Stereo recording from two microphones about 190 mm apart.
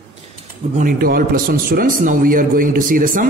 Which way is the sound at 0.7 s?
50° right (ahead or behind).